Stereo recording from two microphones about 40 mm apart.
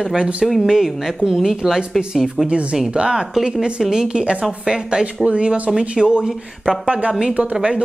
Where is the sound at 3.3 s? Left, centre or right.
Centre.